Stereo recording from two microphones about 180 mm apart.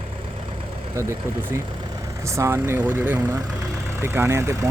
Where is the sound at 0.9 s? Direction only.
15° right (ahead or behind).